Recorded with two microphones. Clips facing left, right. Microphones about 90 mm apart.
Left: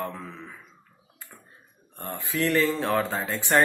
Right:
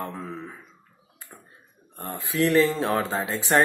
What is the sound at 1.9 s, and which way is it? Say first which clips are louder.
Speech: right 2 dB; 5° right (ahead or behind).